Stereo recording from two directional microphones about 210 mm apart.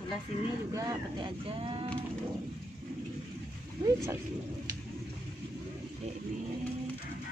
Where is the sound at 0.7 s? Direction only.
20° right (ahead or behind).